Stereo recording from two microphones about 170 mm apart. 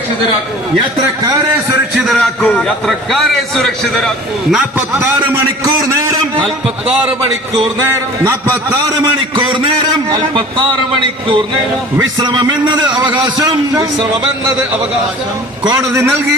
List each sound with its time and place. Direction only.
2.0 s a man's voice: centre (ahead or behind)
6.0 s a man's voice: 25° right (ahead or behind)
9.0 s a man's voice: 25° right (ahead or behind)
11.9 s a man's voice: 25° right (ahead or behind)
15.6 s a man's voice: 20° right (ahead or behind)